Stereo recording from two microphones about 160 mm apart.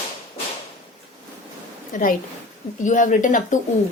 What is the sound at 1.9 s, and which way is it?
Speech, 55° left (ahead or behind).